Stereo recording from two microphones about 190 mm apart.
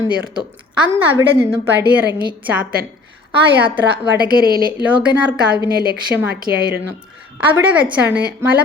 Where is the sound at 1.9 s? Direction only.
10° right (ahead or behind).